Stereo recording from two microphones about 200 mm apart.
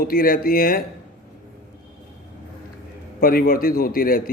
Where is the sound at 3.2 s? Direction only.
45° left (ahead or behind).